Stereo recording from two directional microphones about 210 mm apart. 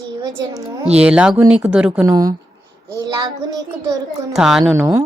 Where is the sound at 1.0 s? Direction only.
5° right (ahead or behind).